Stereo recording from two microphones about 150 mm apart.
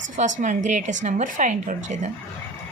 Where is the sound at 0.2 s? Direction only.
55° right (ahead or behind).